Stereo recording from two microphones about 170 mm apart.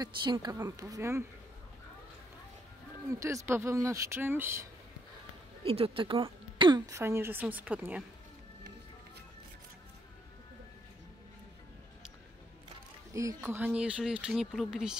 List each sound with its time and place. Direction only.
0.0 s a woman's voice: 25° right (ahead or behind)
3.2 s speech: 20° right (ahead or behind)
5.6 s speech: 30° right (ahead or behind); by 8.0 s 10° right (ahead or behind)
13.1 s speech: 20° right (ahead or behind)